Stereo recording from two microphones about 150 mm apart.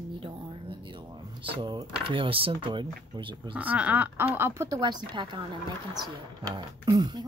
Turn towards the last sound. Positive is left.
turn(degrees=-25)  # may be behind; listen again after turning